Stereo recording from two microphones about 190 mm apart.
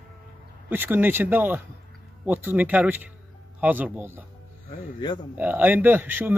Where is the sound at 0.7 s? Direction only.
10° right (ahead or behind).